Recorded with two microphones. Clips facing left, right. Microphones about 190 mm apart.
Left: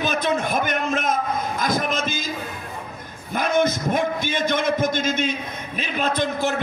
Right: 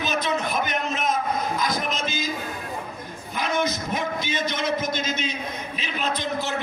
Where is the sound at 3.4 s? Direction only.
50° left (ahead or behind).